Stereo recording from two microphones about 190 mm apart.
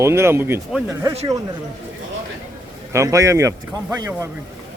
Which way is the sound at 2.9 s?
15° right (ahead or behind).